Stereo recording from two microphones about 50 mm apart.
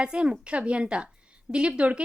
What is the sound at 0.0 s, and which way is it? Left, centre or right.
A woman's voice, centre.